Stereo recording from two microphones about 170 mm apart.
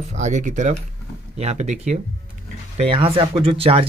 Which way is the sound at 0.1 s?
45° right (ahead or behind).